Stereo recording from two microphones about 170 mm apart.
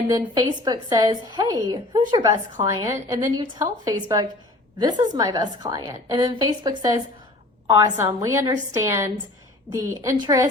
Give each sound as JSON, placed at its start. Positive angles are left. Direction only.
{"t": 0.1, "sound": "a woman's voice", "side_deg": -25}
{"t": 7.9, "sound": "a woman's voice", "side_deg": -15}